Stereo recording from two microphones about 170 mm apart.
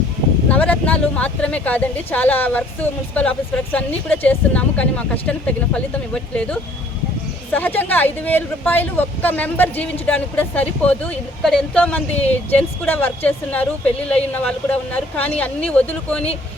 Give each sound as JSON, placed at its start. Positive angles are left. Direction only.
{"t": 0.4, "sound": "speech", "side_deg": 10}
{"t": 12.1, "sound": "speech", "side_deg": 35}
{"t": 12.5, "sound": "speech", "side_deg": 10}